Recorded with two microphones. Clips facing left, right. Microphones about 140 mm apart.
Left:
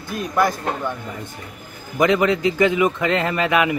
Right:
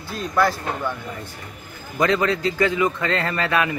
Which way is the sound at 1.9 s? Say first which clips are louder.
Left 3 dB; 20° left (ahead or behind).